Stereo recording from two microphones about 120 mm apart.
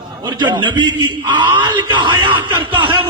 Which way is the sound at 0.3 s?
40° right (ahead or behind).